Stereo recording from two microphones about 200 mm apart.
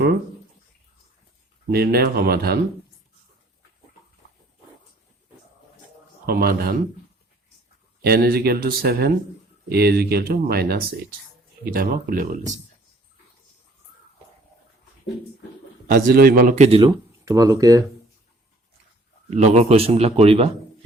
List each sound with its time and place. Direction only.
1.7 s speech: 50° right (ahead or behind)
6.2 s speech: 50° right (ahead or behind)
8.0 s speech: 50° right (ahead or behind)
15.9 s speech: 50° right (ahead or behind); by 16.9 s 30° right (ahead or behind)
17.2 s speech: 15° right (ahead or behind)
19.3 s a man's voice: 35° right (ahead or behind)